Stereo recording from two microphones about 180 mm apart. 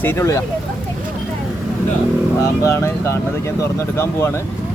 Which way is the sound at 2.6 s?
15° left (ahead or behind).